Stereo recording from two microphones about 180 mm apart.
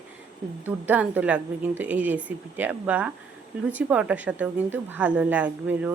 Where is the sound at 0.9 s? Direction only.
10° right (ahead or behind).